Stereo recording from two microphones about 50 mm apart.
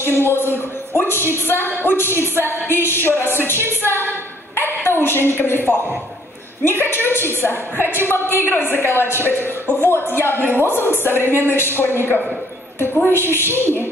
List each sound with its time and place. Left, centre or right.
0.0 s a woman's voice: left
3.8 s a sound: left
4.6 s a woman's voice: left
6.6 s a woman's voice: left